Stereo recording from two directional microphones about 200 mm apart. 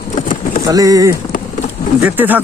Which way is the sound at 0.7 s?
15° right (ahead or behind).